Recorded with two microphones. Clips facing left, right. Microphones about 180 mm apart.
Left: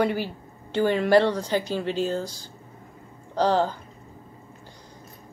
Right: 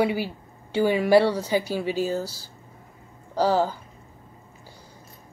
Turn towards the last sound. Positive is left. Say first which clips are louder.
# even
turn(degrees=-10)  # may be behind; listen again after turning